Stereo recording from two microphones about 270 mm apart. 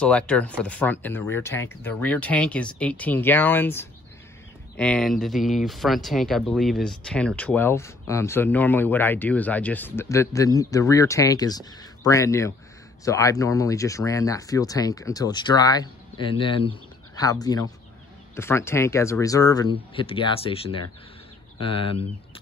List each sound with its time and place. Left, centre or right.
0.0 s speech: centre